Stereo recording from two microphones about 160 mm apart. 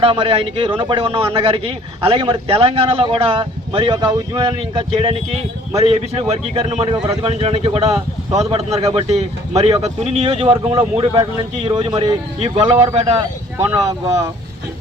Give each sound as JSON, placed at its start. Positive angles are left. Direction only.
{"t": 0.0, "sound": "speech", "side_deg": -35}
{"t": 12.4, "sound": "speech", "side_deg": -40}
{"t": 13.7, "sound": "speech", "side_deg": -20}